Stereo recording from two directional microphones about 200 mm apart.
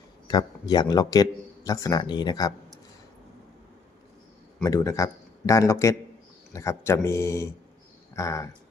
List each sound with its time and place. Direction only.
0.3 s a man's voice: 20° left (ahead or behind)
4.6 s speech: 15° left (ahead or behind)